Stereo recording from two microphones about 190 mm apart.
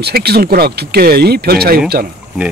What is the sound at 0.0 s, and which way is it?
Speech, 55° right (ahead or behind).